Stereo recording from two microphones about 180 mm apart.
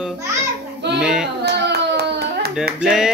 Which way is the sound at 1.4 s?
70° right (ahead or behind).